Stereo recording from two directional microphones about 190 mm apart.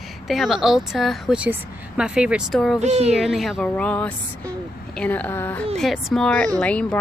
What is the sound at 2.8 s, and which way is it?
Speech, 35° right (ahead or behind).